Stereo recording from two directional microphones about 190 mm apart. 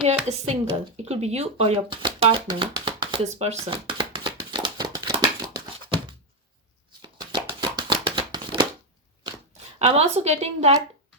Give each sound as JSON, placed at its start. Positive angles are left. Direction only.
{"t": 0.3, "sound": "a woman's voice", "side_deg": -35}
{"t": 1.0, "sound": "shuffling cards", "side_deg": -35}
{"t": 9.7, "sound": "a woman's voice", "side_deg": -35}